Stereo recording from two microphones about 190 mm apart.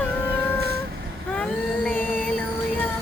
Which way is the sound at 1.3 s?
5° left (ahead or behind).